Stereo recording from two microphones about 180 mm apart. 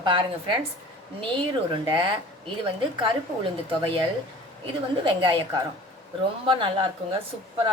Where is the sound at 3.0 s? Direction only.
25° right (ahead or behind).